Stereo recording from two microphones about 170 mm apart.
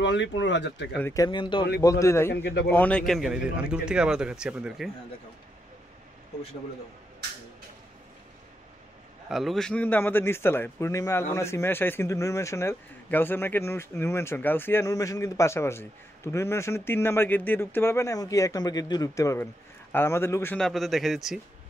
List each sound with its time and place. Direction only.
0.0 s speech: 90° left
0.9 s a man's voice: 15° left (ahead or behind); by 4.9 s 5° right (ahead or behind)
9.3 s speech: centre (ahead or behind); by 20.5 s 15° left (ahead or behind)
20.5 s a man's voice: centre (ahead or behind)